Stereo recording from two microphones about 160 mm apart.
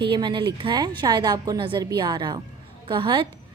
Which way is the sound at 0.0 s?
30° right (ahead or behind).